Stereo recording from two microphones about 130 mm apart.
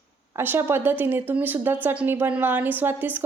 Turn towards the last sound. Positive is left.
turn(degrees=-15)  # may be behind; listen again after turning